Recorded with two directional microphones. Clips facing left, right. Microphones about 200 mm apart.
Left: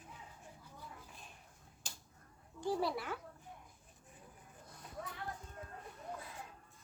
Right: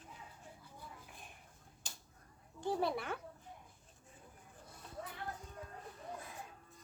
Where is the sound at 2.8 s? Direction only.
55° right (ahead or behind).